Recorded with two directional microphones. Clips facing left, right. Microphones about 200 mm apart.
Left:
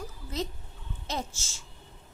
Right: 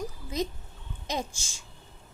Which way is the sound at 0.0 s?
15° right (ahead or behind).